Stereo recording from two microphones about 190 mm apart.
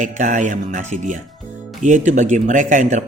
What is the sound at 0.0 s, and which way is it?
Speech, 40° right (ahead or behind).